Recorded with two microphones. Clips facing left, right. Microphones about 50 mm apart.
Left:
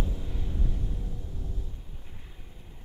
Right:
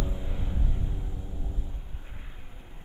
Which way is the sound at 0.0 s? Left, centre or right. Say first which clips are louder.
Even; centre.